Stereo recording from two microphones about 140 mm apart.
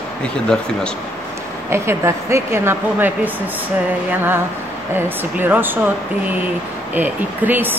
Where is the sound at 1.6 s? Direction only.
20° right (ahead or behind).